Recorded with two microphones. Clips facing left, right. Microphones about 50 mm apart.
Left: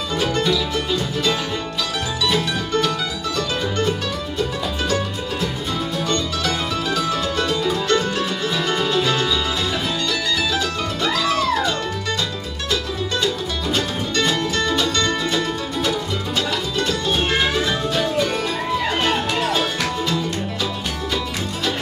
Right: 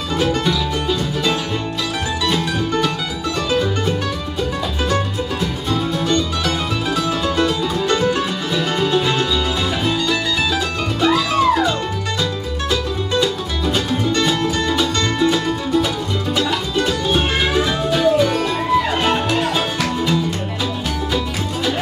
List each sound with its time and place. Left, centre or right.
0.2 s music: centre
6.0 s music: centre
10.5 s music: centre
13.1 s music: centre